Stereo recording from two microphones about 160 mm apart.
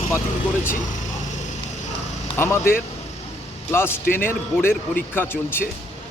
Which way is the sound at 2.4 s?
15° left (ahead or behind).